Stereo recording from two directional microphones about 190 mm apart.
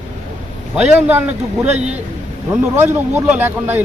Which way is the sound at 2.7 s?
10° right (ahead or behind).